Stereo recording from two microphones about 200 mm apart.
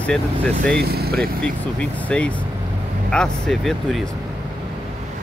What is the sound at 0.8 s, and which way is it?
Speech, 50° right (ahead or behind).